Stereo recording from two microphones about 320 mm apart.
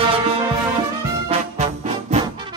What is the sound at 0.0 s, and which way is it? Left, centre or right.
Music, centre.